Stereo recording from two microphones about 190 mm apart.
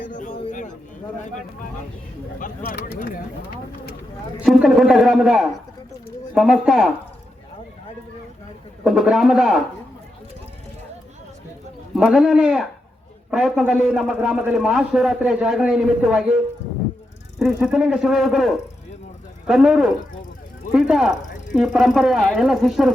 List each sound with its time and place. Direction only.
0.2 s music: 40° left (ahead or behind)
2.4 s speech: 45° left (ahead or behind)
4.4 s a man's voice: centre (ahead or behind)
8.8 s a man's voice: centre (ahead or behind)
11.9 s a man's voice: centre (ahead or behind)
17.4 s a man's voice: 5° right (ahead or behind)